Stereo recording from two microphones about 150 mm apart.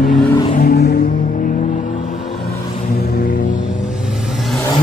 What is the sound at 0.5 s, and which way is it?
Vehicle, 85° left.